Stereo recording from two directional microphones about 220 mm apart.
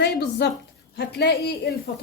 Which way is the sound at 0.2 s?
50° left (ahead or behind).